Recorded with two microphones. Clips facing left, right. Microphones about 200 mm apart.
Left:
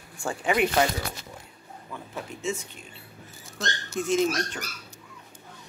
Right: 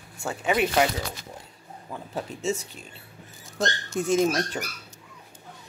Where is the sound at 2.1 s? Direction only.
40° right (ahead or behind).